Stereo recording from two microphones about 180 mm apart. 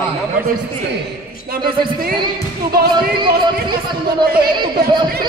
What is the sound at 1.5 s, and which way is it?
Speech, 55° right (ahead or behind).